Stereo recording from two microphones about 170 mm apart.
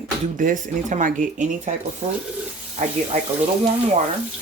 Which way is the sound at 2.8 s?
45° right (ahead or behind).